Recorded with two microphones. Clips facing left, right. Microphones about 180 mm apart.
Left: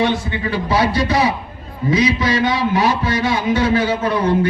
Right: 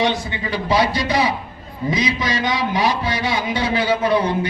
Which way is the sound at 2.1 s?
15° right (ahead or behind).